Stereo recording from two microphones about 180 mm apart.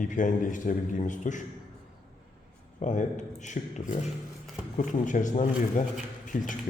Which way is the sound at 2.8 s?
45° left (ahead or behind).